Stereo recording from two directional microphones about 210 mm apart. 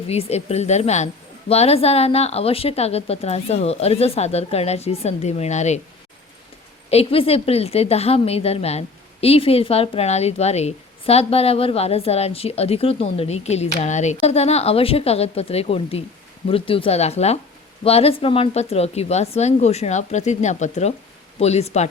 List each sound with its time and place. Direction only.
0.1 s a woman's voice: 30° left (ahead or behind)
6.9 s a woman's voice: 25° left (ahead or behind)